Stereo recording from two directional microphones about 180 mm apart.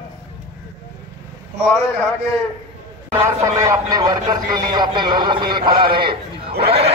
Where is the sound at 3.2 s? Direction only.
15° right (ahead or behind).